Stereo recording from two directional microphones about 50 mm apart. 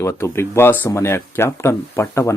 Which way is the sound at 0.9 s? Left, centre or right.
Left.